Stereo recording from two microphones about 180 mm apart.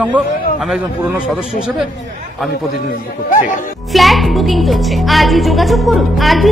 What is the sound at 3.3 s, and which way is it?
Speech, 45° left (ahead or behind).